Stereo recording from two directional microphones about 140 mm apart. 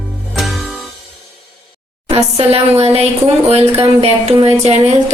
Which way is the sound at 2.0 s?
45° right (ahead or behind).